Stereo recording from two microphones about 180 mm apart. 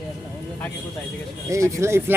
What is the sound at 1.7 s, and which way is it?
Speech, 15° right (ahead or behind).